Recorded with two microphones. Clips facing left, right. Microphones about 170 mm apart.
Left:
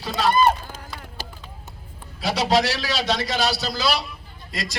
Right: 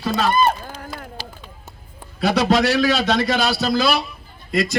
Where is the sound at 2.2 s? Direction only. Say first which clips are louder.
Right 4 dB; 55° right (ahead or behind).